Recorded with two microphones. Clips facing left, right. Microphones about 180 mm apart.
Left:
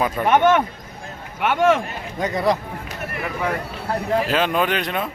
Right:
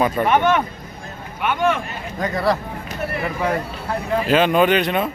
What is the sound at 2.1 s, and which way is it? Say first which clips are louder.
Speech: even; 20° left (ahead or behind).